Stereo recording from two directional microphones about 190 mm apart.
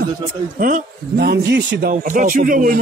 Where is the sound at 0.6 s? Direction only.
50° right (ahead or behind).